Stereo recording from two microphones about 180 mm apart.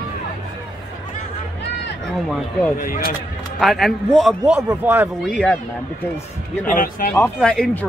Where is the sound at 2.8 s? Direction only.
50° left (ahead or behind).